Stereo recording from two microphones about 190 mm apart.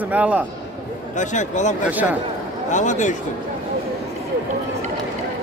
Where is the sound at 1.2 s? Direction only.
40° left (ahead or behind).